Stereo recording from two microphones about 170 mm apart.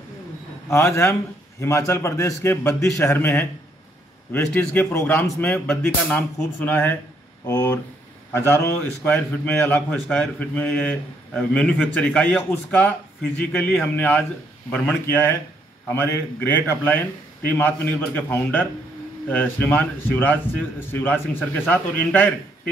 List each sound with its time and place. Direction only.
0.7 s a man's voice: 15° left (ahead or behind)